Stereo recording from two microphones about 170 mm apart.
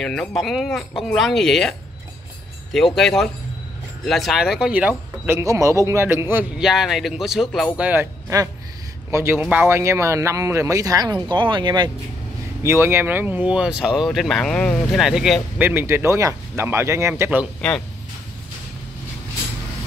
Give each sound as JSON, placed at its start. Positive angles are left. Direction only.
{"t": 0.0, "sound": "speech", "side_deg": 5}
{"t": 6.6, "sound": "speech", "side_deg": 0}
{"t": 12.6, "sound": "speech", "side_deg": -15}
{"t": 17.6, "sound": "speech", "side_deg": 5}